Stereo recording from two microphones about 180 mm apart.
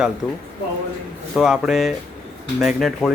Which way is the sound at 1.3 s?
Centre (ahead or behind).